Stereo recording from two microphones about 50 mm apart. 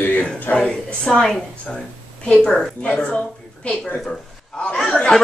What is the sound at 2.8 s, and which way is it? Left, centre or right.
Speech, left.